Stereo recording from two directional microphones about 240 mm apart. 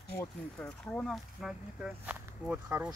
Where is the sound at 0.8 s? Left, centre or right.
Centre.